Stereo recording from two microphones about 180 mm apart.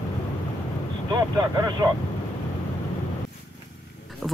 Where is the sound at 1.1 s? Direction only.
20° right (ahead or behind).